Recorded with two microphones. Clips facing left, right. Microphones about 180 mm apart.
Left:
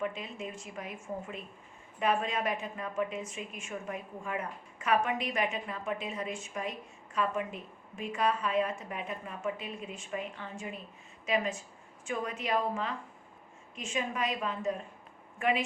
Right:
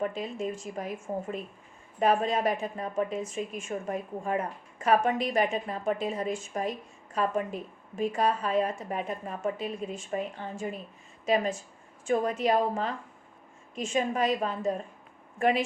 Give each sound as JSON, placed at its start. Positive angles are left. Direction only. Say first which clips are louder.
{"t": 0.0, "sound": "a woman's voice", "louder": "right 5 dB", "side_deg": -40}
{"t": 12.0, "sound": "a woman's voice", "louder": "right 9 dB", "side_deg": -40}